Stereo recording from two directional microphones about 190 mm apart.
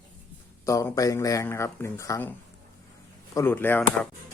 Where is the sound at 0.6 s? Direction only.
15° left (ahead or behind).